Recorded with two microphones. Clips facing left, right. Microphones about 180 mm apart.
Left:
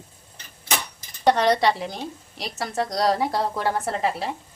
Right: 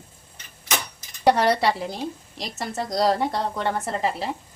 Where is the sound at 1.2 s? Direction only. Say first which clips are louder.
Even; 10° right (ahead or behind).